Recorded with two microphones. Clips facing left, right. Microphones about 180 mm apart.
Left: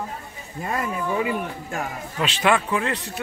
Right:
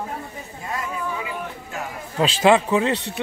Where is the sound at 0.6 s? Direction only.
55° left (ahead or behind).